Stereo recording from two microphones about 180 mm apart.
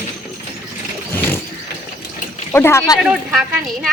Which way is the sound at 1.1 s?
10° left (ahead or behind).